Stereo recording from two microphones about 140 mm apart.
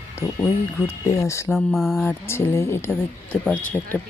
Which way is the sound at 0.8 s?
20° left (ahead or behind).